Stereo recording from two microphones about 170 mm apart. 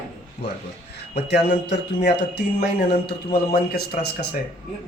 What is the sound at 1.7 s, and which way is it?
Speech, 80° left.